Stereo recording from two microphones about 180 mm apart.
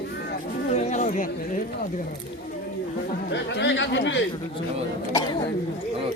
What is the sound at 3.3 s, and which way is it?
Speech, 75° left (ahead or behind).